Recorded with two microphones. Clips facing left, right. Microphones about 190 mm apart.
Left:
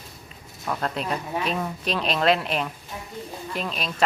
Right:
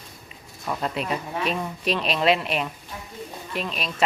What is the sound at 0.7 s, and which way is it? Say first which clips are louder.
Speech: even; 5° right (ahead or behind).